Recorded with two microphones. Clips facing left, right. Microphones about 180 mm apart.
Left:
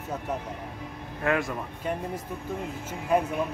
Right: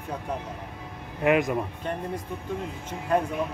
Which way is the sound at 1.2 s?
20° right (ahead or behind).